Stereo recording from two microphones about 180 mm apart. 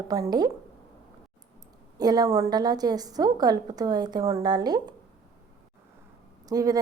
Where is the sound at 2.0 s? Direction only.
20° right (ahead or behind).